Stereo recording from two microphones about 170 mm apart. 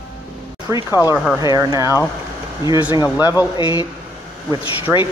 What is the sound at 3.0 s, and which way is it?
Speech, 20° left (ahead or behind).